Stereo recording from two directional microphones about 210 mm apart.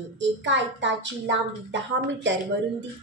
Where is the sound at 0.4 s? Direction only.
60° right (ahead or behind).